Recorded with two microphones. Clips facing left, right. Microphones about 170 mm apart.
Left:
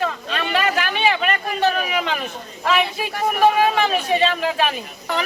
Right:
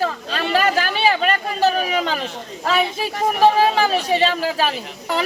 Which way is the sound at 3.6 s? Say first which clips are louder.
Right 1 dB; 35° right (ahead or behind).